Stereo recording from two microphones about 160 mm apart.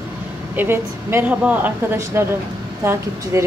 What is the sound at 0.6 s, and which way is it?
Speech, 15° right (ahead or behind).